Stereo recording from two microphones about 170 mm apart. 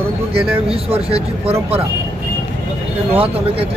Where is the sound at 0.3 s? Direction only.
35° right (ahead or behind).